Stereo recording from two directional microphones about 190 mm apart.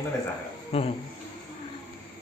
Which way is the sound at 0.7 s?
30° left (ahead or behind).